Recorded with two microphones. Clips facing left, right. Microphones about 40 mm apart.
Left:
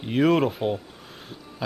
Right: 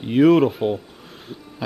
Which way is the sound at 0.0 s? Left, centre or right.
Centre.